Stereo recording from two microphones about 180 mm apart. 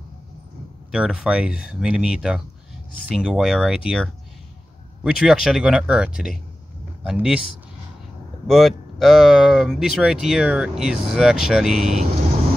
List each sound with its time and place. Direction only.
0.9 s speech: 5° right (ahead or behind)
8.5 s speech: centre (ahead or behind)